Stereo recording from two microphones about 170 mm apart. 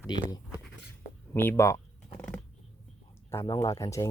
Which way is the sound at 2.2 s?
5° left (ahead or behind).